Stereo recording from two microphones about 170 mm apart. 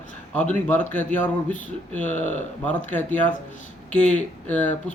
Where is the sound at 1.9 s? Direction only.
10° left (ahead or behind).